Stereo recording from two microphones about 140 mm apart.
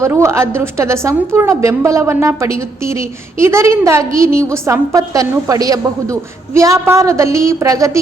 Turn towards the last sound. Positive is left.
turn(degrees=-25)  # may be behind; listen again after turning